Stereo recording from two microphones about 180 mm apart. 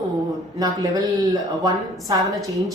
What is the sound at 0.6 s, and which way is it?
Speech, 20° right (ahead or behind).